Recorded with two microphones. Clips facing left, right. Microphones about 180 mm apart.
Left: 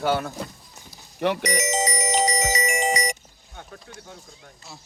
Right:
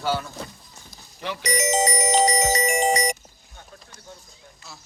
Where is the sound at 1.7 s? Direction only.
35° right (ahead or behind).